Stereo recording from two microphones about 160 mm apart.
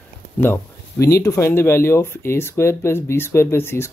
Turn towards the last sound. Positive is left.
turn(degrees=15)  # may be behind; listen again after turning